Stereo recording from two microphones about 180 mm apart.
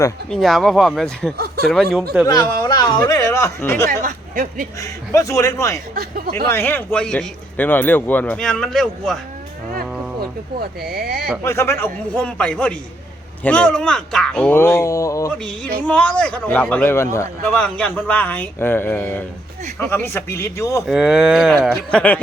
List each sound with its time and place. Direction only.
0.3 s speech: centre (ahead or behind)
2.2 s speech: 20° left (ahead or behind)
4.0 s a sound: 50° right (ahead or behind)
4.8 s a man's voice: 20° left (ahead or behind)
5.9 s speech: 50° right (ahead or behind)
6.3 s a man's voice: 15° left (ahead or behind)
10.8 s speech: 55° right (ahead or behind)
11.4 s a man's voice: 15° left (ahead or behind)
15.4 s a man's voice: 5° left (ahead or behind)
20.8 s a man's voice: 5° right (ahead or behind)